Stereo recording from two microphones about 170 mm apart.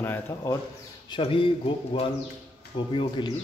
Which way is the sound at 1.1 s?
30° left (ahead or behind).